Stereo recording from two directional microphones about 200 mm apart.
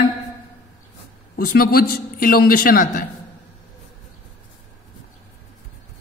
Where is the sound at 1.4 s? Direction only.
45° left (ahead or behind).